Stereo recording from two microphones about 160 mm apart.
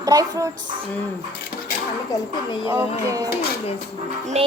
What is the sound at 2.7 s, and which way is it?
Music, 20° right (ahead or behind).